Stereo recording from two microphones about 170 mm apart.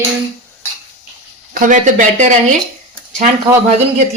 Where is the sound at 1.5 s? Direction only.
50° right (ahead or behind).